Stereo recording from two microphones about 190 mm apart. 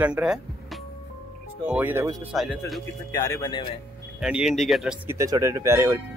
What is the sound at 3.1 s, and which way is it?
Speech, 15° left (ahead or behind).